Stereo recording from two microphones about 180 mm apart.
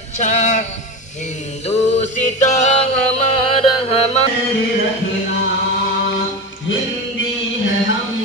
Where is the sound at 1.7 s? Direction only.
40° left (ahead or behind).